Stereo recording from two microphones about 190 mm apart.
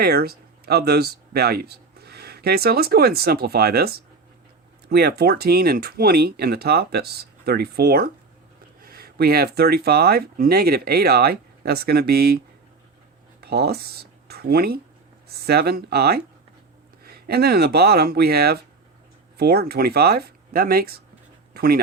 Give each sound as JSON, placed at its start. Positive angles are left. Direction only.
{"t": 0.0, "sound": "speech", "side_deg": -55}
{"t": 13.4, "sound": "speech", "side_deg": -60}
{"t": 21.5, "sound": "a sound", "side_deg": -55}